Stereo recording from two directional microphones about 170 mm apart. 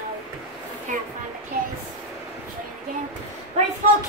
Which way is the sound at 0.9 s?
50° right (ahead or behind).